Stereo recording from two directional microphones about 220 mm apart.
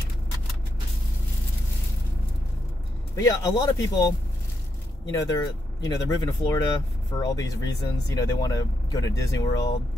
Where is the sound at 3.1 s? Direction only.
15° left (ahead or behind).